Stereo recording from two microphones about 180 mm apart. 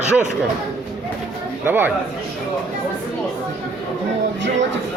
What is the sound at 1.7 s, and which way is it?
Speech, 10° right (ahead or behind).